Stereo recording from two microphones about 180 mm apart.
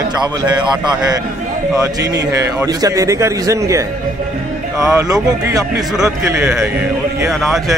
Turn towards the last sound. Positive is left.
turn(degrees=0)  # may be behind; listen again after turning